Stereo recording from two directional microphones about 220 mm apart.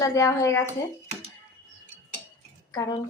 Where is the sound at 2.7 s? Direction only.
15° left (ahead or behind).